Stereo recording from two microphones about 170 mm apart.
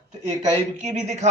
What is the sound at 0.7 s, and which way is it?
Speech, 45° right (ahead or behind).